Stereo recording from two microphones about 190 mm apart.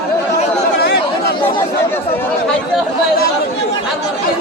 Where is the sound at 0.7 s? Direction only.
60° left (ahead or behind).